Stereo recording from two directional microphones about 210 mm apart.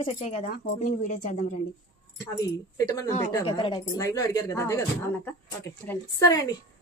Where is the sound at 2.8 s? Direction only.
15° left (ahead or behind).